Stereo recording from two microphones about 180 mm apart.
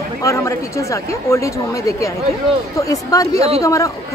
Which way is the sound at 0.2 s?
15° left (ahead or behind).